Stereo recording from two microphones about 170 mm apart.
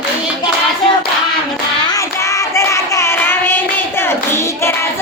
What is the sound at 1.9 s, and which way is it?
Child singing, 20° left (ahead or behind).